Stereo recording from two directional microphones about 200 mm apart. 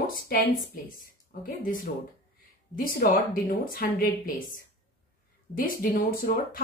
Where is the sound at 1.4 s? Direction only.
45° left (ahead or behind).